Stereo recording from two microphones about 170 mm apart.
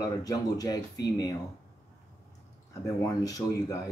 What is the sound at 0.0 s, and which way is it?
Speech, 20° left (ahead or behind).